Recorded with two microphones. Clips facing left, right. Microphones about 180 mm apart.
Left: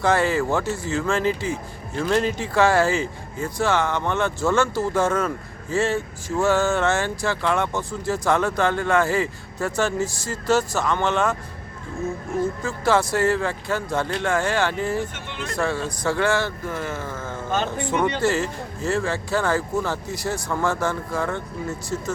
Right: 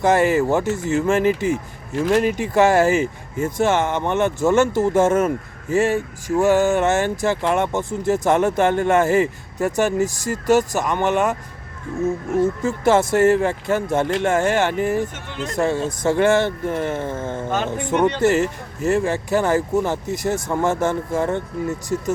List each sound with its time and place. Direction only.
0.0 s speech: 20° right (ahead or behind)
12.6 s speech: 25° right (ahead or behind)
15.0 s speech: 40° right (ahead or behind)
15.4 s speech: 20° right (ahead or behind)